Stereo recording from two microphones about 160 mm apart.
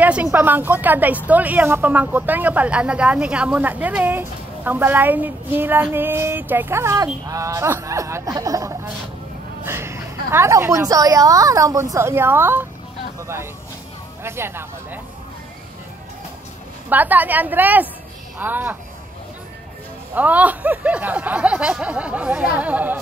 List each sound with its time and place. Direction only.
0.0 s a woman's voice: 10° right (ahead or behind)
14.2 s a woman's voice: 15° right (ahead or behind)
16.9 s a woman's voice: 10° right (ahead or behind)
20.2 s a woman's voice: 10° right (ahead or behind)